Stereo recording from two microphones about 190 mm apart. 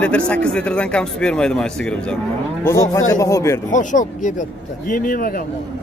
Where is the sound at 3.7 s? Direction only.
40° left (ahead or behind).